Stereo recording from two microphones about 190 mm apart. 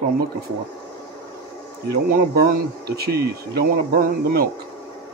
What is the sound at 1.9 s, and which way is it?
Speech, 55° right (ahead or behind).